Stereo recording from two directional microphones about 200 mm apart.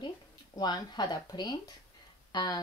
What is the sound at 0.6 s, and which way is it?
Speech, 20° left (ahead or behind).